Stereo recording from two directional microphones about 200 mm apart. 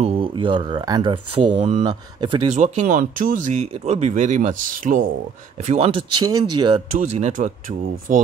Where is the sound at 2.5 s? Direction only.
35° right (ahead or behind).